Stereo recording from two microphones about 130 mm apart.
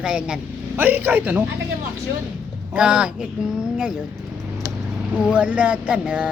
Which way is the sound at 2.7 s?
5° right (ahead or behind).